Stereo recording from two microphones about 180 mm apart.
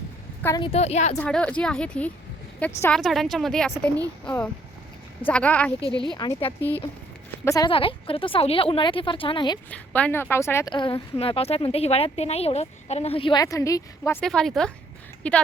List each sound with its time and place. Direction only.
0.4 s speech: 20° left (ahead or behind)
0.7 s a woman's voice: 35° left (ahead or behind)
1.2 s a woman's voice: 5° left (ahead or behind)
5.8 s speech: 25° right (ahead or behind)
6.1 s speech: 25° left (ahead or behind)
6.6 s speech: 10° left (ahead or behind)
7.7 s speech: 30° left (ahead or behind)
9.6 s speech: 10° left (ahead or behind)
14.2 s a woman's voice: 5° left (ahead or behind)